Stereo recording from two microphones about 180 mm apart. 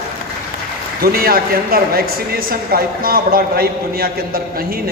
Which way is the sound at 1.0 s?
55° right (ahead or behind).